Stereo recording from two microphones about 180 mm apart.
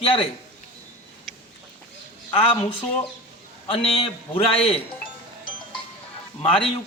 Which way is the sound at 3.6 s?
30° left (ahead or behind).